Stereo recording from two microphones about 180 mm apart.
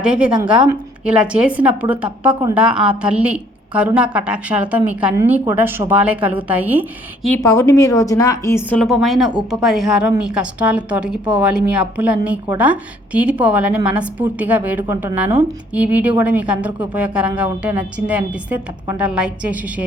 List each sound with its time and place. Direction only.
0.0 s a woman's voice: 5° right (ahead or behind)
7.5 s a woman's voice: 15° left (ahead or behind)
8.8 s a woman's voice: centre (ahead or behind)